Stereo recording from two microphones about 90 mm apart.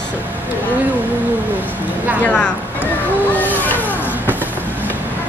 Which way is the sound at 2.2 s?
15° left (ahead or behind).